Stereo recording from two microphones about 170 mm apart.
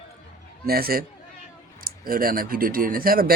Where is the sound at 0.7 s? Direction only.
60° right (ahead or behind).